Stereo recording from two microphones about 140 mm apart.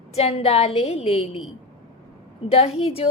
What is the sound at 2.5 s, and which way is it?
Speech, 45° left (ahead or behind).